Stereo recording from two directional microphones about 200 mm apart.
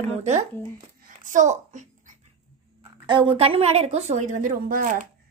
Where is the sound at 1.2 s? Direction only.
40° right (ahead or behind).